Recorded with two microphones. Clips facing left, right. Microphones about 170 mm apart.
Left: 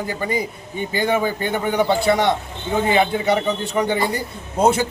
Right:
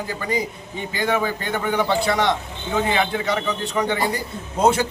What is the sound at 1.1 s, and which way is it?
Speech, 15° left (ahead or behind).